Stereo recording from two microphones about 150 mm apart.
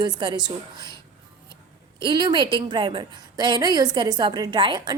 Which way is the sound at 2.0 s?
30° right (ahead or behind).